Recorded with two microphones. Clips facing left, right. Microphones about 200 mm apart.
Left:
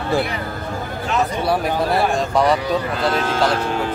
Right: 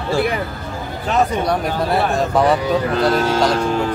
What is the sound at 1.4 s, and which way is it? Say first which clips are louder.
Speech: even; 5° left (ahead or behind).